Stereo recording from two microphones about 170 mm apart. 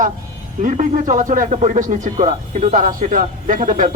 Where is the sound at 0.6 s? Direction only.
45° right (ahead or behind).